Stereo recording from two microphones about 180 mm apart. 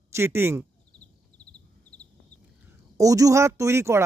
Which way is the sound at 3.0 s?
20° right (ahead or behind).